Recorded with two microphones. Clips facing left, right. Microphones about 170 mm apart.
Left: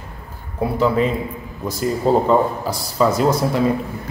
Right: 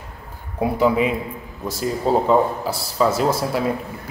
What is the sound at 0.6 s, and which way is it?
Speech, 10° right (ahead or behind).